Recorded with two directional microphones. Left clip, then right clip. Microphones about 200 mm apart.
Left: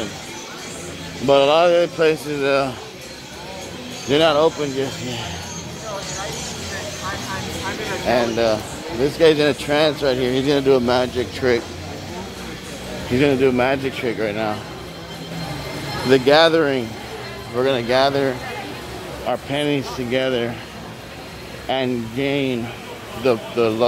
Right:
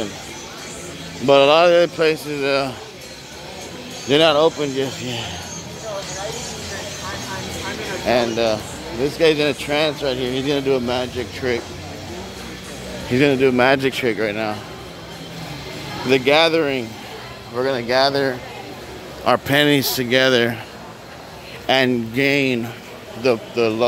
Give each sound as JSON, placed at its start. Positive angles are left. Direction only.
{"t": 1.2, "sound": "speech", "side_deg": -35}
{"t": 2.0, "sound": "speech", "side_deg": -10}
{"t": 4.1, "sound": "speech", "side_deg": -30}
{"t": 8.1, "sound": "speech", "side_deg": -30}
{"t": 9.2, "sound": "speech", "side_deg": 0}
{"t": 13.1, "sound": "speech", "side_deg": -25}
{"t": 13.6, "sound": "speech", "side_deg": -35}
{"t": 14.1, "sound": "speech", "side_deg": -20}
{"t": 16.1, "sound": "speech", "side_deg": -5}
{"t": 19.2, "sound": "speech", "side_deg": -40}
{"t": 21.6, "sound": "speech", "side_deg": -40}
{"t": 23.2, "sound": "speech", "side_deg": -20}